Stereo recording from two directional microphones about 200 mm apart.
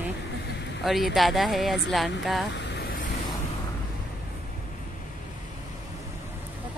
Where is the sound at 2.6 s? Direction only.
50° left (ahead or behind).